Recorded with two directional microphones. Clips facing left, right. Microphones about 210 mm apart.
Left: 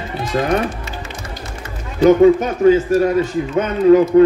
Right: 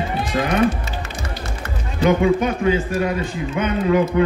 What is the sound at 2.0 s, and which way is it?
Speech, 40° left (ahead or behind).